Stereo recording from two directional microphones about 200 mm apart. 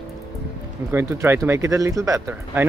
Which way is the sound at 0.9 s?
10° right (ahead or behind).